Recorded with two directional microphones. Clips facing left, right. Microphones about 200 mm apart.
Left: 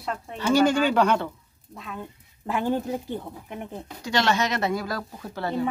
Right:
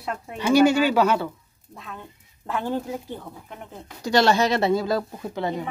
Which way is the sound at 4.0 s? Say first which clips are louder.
Right 5 dB; 35° right (ahead or behind).